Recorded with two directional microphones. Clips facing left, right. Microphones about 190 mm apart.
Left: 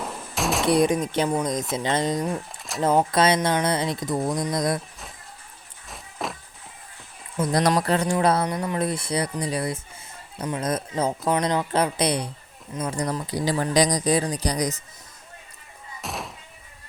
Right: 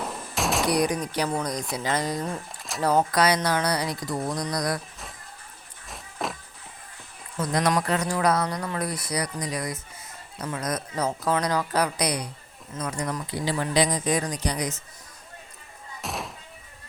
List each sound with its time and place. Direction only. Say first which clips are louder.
0.0 s fusillade: left 1 dB; centre (ahead or behind)
0.7 s speech: left 4 dB; 25° left (ahead or behind)
2.7 s speech: left 3 dB; centre (ahead or behind)
3.1 s speech: left 2 dB; 25° left (ahead or behind)
5.9 s walk: even; centre (ahead or behind)
7.4 s speech: left 3 dB; 30° left (ahead or behind)
16.0 s thunk: even; centre (ahead or behind)